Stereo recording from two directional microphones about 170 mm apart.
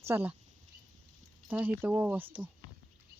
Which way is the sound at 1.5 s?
10° right (ahead or behind).